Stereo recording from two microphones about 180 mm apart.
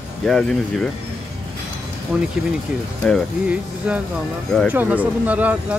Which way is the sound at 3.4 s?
5° right (ahead or behind).